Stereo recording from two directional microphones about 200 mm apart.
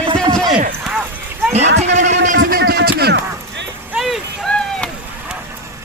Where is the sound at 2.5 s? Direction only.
50° right (ahead or behind).